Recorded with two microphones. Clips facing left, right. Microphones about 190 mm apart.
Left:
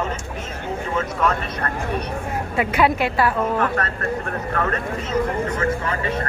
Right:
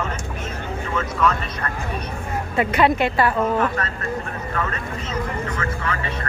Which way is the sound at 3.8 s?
55° left (ahead or behind).